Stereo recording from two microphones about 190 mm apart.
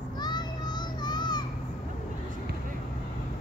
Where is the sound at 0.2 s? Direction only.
20° left (ahead or behind).